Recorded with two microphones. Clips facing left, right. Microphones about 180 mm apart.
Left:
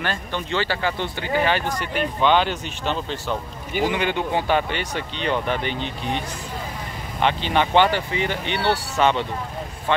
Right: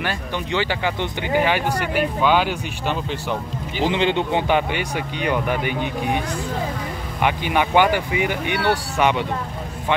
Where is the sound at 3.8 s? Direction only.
20° right (ahead or behind).